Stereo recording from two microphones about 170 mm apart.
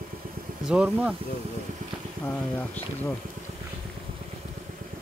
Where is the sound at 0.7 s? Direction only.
5° right (ahead or behind).